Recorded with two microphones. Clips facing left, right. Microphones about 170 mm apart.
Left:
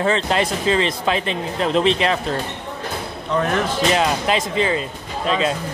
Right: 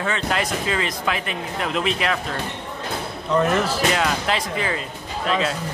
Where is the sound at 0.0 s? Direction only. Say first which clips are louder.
Left 5 dB; 30° left (ahead or behind).